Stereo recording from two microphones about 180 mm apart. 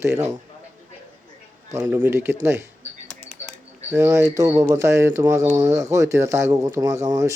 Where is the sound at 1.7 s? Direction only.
15° right (ahead or behind).